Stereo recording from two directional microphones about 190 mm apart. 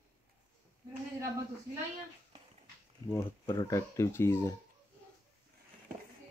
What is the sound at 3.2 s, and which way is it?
Speech, 20° left (ahead or behind).